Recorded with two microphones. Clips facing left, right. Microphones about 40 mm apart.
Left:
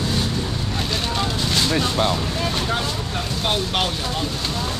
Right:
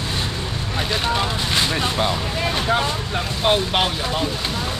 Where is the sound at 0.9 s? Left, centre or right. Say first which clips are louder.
Right 4 dB; centre.